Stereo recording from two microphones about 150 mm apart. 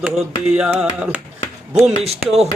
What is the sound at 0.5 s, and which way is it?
Speech, 10° right (ahead or behind).